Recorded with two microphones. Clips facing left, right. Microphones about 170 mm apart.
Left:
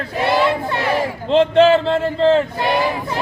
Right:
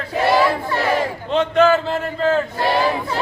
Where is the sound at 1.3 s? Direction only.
30° left (ahead or behind).